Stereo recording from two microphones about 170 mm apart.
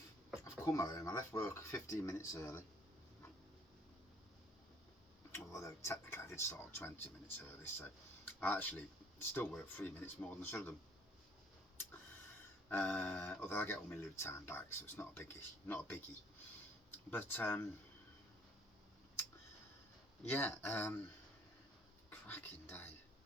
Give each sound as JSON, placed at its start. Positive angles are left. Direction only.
{"t": 0.6, "sound": "speech", "side_deg": 20}
{"t": 5.3, "sound": "speech", "side_deg": 15}
{"t": 12.6, "sound": "speech", "side_deg": 10}
{"t": 20.3, "sound": "speech", "side_deg": 10}
{"t": 22.1, "sound": "speech", "side_deg": 15}